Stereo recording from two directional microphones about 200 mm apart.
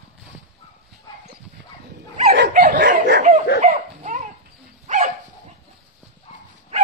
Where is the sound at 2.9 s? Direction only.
40° right (ahead or behind).